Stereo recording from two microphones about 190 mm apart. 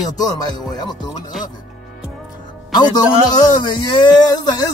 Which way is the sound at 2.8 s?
20° left (ahead or behind).